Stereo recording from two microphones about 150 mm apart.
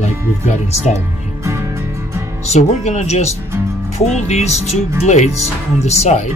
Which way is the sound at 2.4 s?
50° left (ahead or behind).